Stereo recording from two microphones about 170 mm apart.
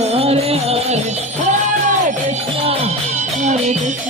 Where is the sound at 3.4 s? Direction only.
45° right (ahead or behind).